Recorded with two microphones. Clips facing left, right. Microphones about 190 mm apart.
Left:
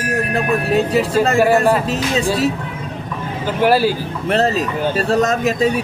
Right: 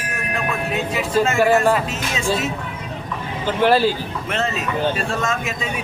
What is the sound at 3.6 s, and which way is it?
Speech, 10° left (ahead or behind).